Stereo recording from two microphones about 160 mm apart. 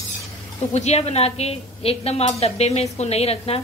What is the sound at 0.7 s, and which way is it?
A woman's voice, 45° left (ahead or behind).